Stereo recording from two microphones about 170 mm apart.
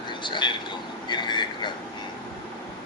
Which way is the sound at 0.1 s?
30° left (ahead or behind).